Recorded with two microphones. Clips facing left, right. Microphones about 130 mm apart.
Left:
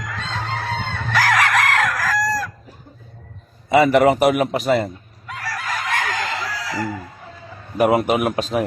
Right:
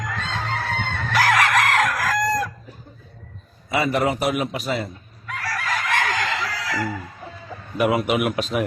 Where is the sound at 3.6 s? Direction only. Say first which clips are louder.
Left 8 dB; 70° left (ahead or behind); by 4.9 s 55° left (ahead or behind).